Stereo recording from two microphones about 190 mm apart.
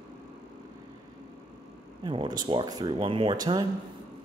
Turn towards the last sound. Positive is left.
turn(degrees=-20)  # may be behind; listen again after turning